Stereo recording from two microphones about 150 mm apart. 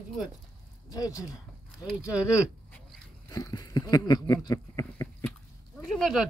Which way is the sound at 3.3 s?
25° left (ahead or behind).